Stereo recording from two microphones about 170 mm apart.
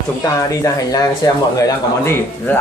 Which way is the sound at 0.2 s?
20° left (ahead or behind).